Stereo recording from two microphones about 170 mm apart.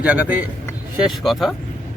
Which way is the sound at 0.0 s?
10° right (ahead or behind).